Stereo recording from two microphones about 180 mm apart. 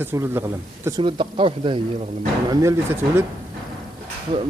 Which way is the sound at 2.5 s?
15° right (ahead or behind).